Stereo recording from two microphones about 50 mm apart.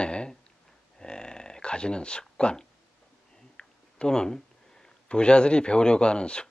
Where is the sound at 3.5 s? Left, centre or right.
Centre.